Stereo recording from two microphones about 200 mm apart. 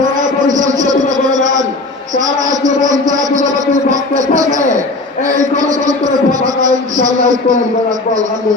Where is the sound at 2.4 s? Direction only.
40° right (ahead or behind).